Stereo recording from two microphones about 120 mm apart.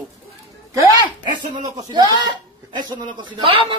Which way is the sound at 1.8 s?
35° right (ahead or behind).